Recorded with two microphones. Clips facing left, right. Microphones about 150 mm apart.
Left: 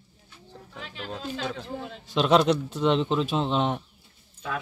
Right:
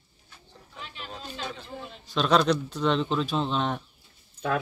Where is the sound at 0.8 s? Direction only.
90° left.